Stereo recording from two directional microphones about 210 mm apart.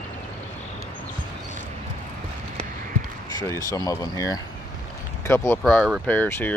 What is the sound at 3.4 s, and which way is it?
Speech, 15° left (ahead or behind).